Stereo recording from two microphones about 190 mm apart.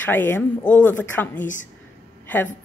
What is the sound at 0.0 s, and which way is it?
Speech, 10° left (ahead or behind).